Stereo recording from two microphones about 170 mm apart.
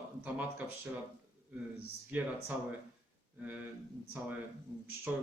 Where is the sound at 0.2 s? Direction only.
10° right (ahead or behind).